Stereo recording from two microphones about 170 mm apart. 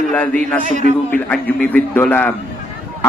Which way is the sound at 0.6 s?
45° right (ahead or behind).